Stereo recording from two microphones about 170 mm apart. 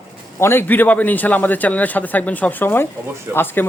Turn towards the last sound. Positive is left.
turn(degrees=10)  # may be behind; listen again after turning